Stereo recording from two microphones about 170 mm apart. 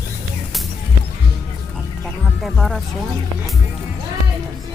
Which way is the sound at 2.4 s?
Centre (ahead or behind).